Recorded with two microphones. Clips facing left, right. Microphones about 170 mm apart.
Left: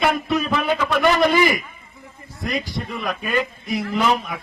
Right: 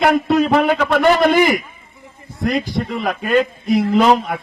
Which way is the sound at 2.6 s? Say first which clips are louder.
Right 6 dB; 70° right (ahead or behind).